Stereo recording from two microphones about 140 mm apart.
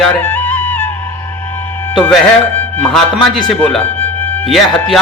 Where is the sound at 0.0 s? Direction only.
10° left (ahead or behind).